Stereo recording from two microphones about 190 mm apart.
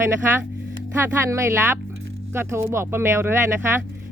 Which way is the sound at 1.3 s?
15° right (ahead or behind).